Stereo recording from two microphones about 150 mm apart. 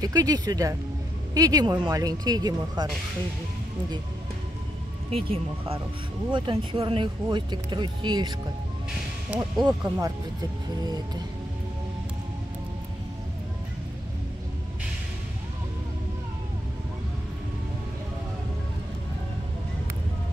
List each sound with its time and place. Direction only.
0.0 s speech: 25° right (ahead or behind)
5.1 s speech: 40° right (ahead or behind)
9.4 s speech: 30° right (ahead or behind)